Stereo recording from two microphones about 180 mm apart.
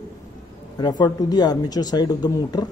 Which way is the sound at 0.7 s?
20° left (ahead or behind).